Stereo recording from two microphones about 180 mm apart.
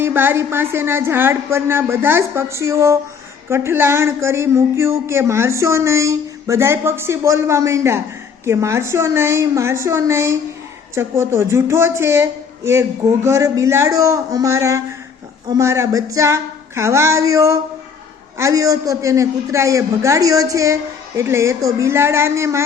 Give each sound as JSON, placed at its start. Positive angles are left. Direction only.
{"t": 0.0, "sound": "speech", "side_deg": -10}